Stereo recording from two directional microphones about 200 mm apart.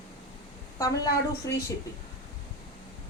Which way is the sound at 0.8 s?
15° left (ahead or behind).